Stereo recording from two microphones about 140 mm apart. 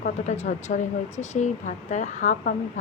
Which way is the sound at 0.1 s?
55° left (ahead or behind).